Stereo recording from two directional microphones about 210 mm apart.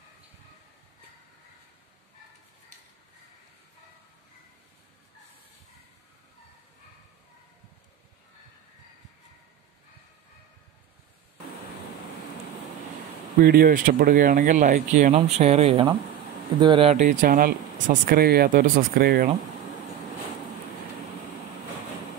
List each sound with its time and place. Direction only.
13.4 s speech: 45° right (ahead or behind)